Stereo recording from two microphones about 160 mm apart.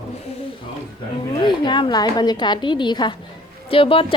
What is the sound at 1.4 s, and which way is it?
A woman's voice, 30° left (ahead or behind).